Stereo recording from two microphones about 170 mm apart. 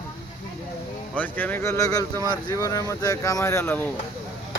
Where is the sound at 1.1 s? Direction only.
10° left (ahead or behind).